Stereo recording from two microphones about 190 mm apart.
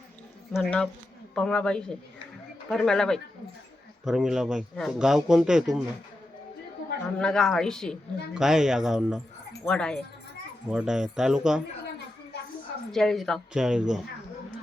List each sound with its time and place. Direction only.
0.5 s speech: 5° left (ahead or behind)
7.2 s speech: 5° left (ahead or behind)
12.9 s speech: centre (ahead or behind)